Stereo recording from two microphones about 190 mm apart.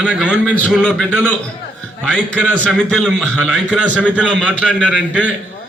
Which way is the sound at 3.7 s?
5° right (ahead or behind).